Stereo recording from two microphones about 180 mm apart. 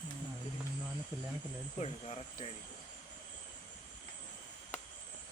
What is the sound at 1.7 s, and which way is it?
Speech, 35° left (ahead or behind).